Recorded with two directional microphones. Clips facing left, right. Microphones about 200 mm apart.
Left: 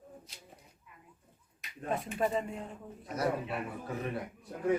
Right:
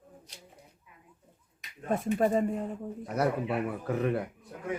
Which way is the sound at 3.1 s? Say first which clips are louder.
Right 4 dB; 60° right (ahead or behind).